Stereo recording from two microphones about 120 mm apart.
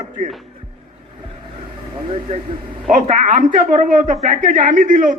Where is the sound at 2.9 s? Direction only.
90° right.